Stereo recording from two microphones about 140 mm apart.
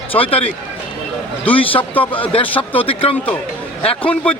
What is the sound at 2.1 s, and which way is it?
A man's voice, 40° left (ahead or behind).